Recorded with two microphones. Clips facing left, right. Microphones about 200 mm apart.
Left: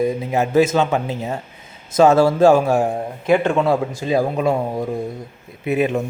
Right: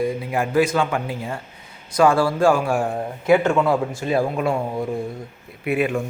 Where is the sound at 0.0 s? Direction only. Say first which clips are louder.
Left 3 dB; 20° left (ahead or behind).